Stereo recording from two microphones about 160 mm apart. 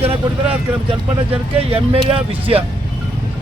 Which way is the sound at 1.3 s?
35° right (ahead or behind).